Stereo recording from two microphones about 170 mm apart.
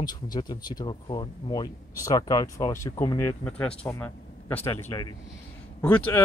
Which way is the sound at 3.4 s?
5° left (ahead or behind).